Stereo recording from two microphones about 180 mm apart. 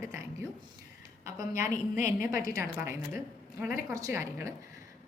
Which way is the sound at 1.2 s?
15° right (ahead or behind).